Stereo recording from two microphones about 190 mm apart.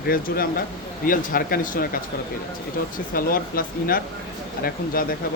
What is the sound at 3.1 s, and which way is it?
Speech, 50° left (ahead or behind).